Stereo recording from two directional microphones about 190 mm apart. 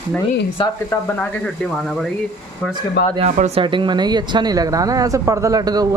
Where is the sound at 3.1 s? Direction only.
35° right (ahead or behind); by 5.8 s 20° right (ahead or behind).